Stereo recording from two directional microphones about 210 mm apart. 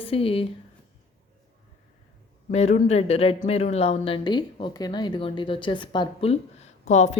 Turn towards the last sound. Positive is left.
turn(degrees=35)  # may be behind; listen again after turning